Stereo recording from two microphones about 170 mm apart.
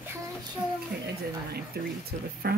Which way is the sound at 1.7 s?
70° right (ahead or behind).